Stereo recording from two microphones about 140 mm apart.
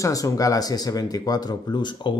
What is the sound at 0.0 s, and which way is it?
Speech, 25° left (ahead or behind).